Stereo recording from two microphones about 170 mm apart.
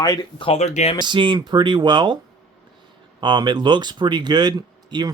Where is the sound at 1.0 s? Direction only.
25° right (ahead or behind).